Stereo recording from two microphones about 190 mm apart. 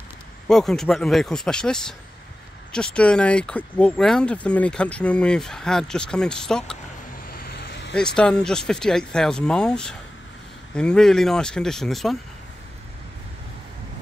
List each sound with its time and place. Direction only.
0.5 s speech: centre (ahead or behind)
7.3 s vehicle: 55° left (ahead or behind)
7.9 s speech: 5° left (ahead or behind)